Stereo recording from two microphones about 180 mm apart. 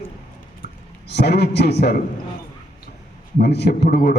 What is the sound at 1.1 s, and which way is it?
Speech, 65° left (ahead or behind).